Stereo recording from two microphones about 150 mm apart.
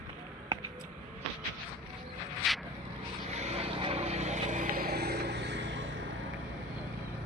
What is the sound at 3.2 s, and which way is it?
Vehicle, 45° right (ahead or behind).